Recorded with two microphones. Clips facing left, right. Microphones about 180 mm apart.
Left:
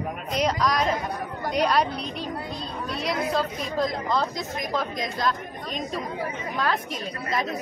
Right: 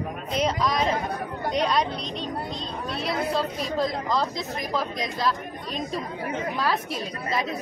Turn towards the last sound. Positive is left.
turn(degrees=-30)  # may be behind; listen again after turning